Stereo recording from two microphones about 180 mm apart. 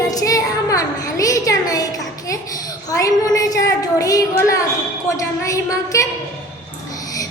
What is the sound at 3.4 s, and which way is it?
Child singing, 20° left (ahead or behind).